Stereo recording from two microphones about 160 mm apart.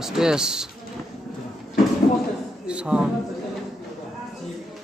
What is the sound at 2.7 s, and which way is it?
Speech, 5° right (ahead or behind).